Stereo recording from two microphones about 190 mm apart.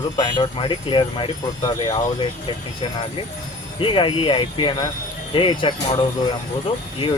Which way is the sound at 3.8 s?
25° left (ahead or behind).